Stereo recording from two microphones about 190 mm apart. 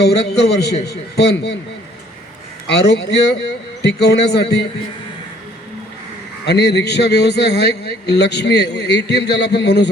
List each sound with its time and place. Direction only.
0.0 s a man's voice: 60° left (ahead or behind)
2.6 s a man's voice: 60° left (ahead or behind)
6.4 s a man's voice: 65° left (ahead or behind)